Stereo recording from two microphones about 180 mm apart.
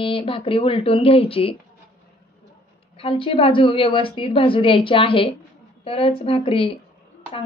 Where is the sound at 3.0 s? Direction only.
30° left (ahead or behind).